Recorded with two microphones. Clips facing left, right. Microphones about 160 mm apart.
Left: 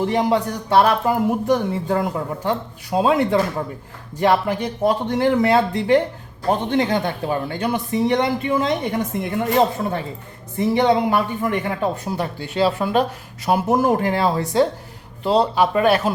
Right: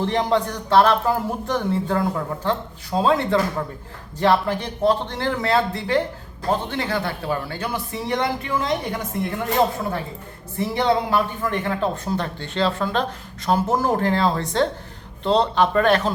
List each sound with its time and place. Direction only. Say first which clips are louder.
0.0 s a woman's voice: left 2 dB; 10° left (ahead or behind)
10.6 s speech: left 4 dB; 15° left (ahead or behind)